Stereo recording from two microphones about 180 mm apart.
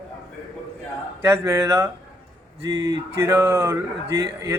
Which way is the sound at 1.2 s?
15° right (ahead or behind).